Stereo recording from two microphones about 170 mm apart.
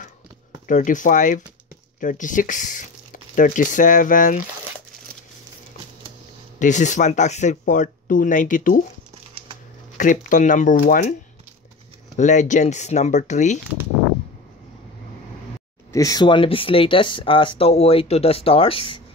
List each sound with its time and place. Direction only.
0.7 s speech: 50° left (ahead or behind)
6.6 s speech: 45° left (ahead or behind)
9.9 s speech: 50° left (ahead or behind)
12.2 s speech: 45° left (ahead or behind)
15.9 s speech: 20° left (ahead or behind)